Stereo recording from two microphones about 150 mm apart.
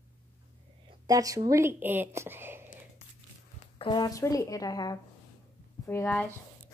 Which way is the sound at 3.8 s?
30° left (ahead or behind).